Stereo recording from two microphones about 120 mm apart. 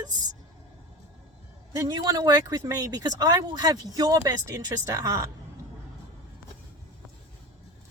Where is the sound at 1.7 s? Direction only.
30° right (ahead or behind).